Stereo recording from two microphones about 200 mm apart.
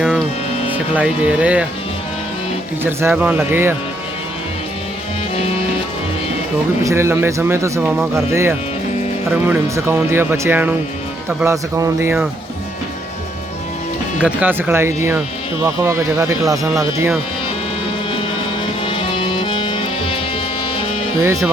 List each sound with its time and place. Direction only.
0.7 s speech: 5° right (ahead or behind)
2.8 s speech: 10° right (ahead or behind)
5.4 s music: 30° left (ahead or behind)
6.8 s speech: 15° right (ahead or behind)
14.2 s speech: 5° right (ahead or behind)
18.9 s music: 25° left (ahead or behind)
21.2 s speech: 10° right (ahead or behind)